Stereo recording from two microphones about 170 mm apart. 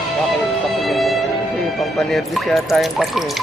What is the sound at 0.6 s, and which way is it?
Music, centre (ahead or behind).